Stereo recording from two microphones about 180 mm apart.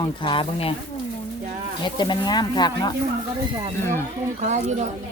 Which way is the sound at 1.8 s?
25° left (ahead or behind).